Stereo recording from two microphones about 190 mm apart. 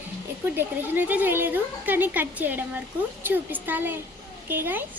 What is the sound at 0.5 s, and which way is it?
A woman's voice, 10° right (ahead or behind).